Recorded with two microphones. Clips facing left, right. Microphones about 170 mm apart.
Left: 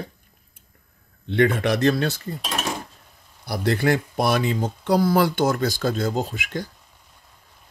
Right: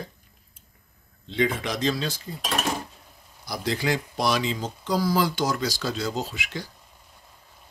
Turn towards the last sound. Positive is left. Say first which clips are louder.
# left 5 dB
turn(degrees=50)  # may be behind; listen again after turning